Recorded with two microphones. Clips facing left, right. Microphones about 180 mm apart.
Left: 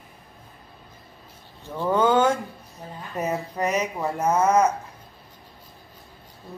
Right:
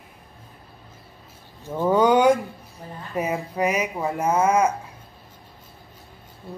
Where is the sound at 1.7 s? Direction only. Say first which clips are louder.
Right 3 dB; 15° right (ahead or behind).